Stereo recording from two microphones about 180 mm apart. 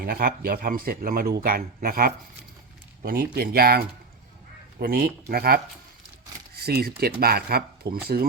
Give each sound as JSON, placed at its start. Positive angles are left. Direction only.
{"t": 0.0, "sound": "a man's voice", "side_deg": -55}
{"t": 6.6, "sound": "a man's voice", "side_deg": -60}